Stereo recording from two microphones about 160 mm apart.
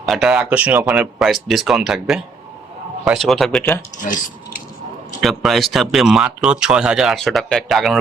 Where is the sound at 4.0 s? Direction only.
55° left (ahead or behind).